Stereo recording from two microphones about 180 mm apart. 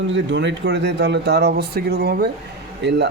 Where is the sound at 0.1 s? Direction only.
85° right.